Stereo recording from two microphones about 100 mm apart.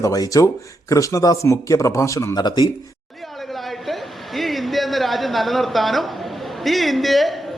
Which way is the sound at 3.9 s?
Centre (ahead or behind).